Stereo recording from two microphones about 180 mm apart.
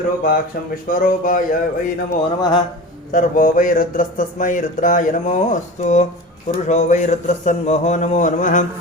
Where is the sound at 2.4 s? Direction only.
25° left (ahead or behind).